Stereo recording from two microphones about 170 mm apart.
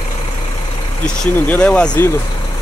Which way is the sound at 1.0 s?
5° left (ahead or behind).